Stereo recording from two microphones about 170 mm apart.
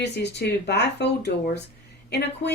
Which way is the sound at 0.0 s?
85° left.